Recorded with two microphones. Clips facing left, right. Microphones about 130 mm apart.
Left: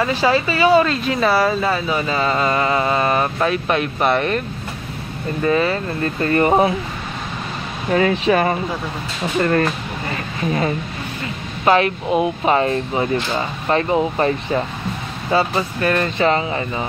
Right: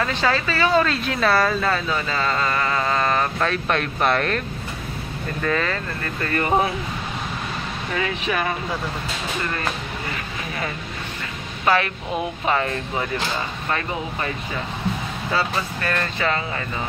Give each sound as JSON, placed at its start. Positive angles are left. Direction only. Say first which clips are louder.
{"t": 0.0, "sound": "speech", "louder": "left 5 dB", "side_deg": 10}
{"t": 5.4, "sound": "speech", "louder": "left 6 dB", "side_deg": 15}
{"t": 6.0, "sound": "speech", "louder": "left 7 dB", "side_deg": 30}
{"t": 7.9, "sound": "speech", "louder": "left 9 dB", "side_deg": 35}
{"t": 11.6, "sound": "speech", "louder": "left 5 dB", "side_deg": 20}
{"t": 15.3, "sound": "speech", "louder": "left 6 dB", "side_deg": 25}